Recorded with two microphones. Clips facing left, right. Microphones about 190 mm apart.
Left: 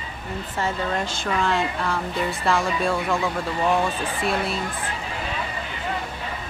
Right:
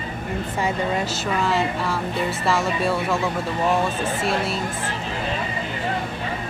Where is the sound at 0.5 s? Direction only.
10° right (ahead or behind).